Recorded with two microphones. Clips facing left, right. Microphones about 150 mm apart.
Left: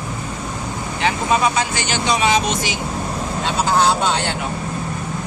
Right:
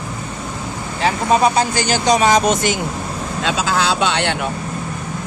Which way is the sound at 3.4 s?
90° right.